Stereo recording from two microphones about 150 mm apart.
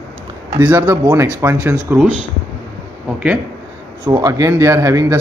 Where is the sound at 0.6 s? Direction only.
15° right (ahead or behind).